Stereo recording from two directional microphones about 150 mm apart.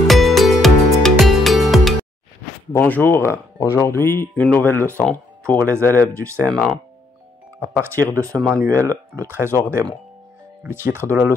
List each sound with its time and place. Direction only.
0.0 s music: centre (ahead or behind)
2.7 s speech: 10° left (ahead or behind)
5.6 s speech: 20° right (ahead or behind)
6.5 s speech: centre (ahead or behind)
7.6 s speech: 15° right (ahead or behind)
10.6 s speech: 15° right (ahead or behind)